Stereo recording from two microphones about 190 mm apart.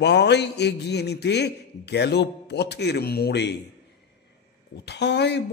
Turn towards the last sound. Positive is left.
turn(degrees=65)  # may be behind; listen again after turning